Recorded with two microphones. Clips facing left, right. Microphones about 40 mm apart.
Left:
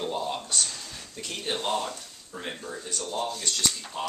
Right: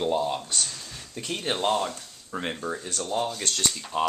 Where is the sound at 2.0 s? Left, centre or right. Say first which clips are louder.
Right 6 dB; right.